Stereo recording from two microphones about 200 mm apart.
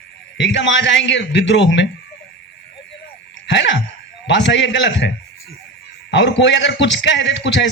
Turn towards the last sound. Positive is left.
turn(degrees=65)  # may be behind; listen again after turning